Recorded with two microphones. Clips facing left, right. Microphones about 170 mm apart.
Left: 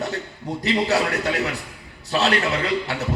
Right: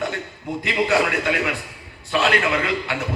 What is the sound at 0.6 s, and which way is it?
A man's voice, 40° left (ahead or behind).